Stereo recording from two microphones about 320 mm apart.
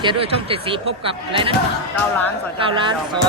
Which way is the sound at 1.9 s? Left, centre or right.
Centre.